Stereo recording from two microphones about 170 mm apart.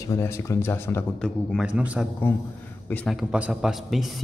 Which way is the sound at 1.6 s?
5° right (ahead or behind).